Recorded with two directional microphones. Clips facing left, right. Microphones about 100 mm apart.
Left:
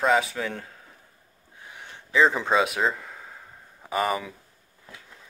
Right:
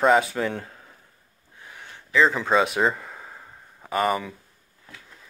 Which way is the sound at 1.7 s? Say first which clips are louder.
Right 1 dB; 15° left (ahead or behind).